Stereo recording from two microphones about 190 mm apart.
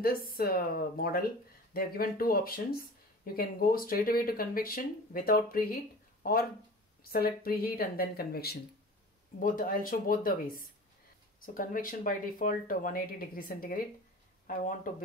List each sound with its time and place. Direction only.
0.0 s speech: 50° left (ahead or behind)
7.0 s speech: 50° left (ahead or behind)